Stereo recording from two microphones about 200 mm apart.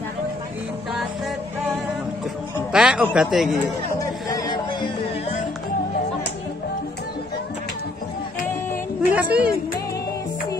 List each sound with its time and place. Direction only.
2.7 s speech: 5° right (ahead or behind)
4.0 s music: 15° left (ahead or behind)
9.1 s speech: 5° right (ahead or behind)